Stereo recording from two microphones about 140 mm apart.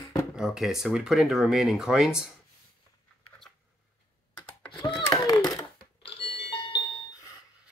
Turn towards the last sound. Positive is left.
turn(degrees=40)  # may be behind; listen again after turning